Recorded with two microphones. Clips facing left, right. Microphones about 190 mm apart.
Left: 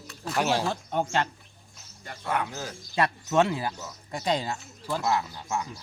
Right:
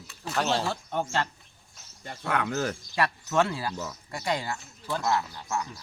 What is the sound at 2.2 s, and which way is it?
Speech, 70° right (ahead or behind).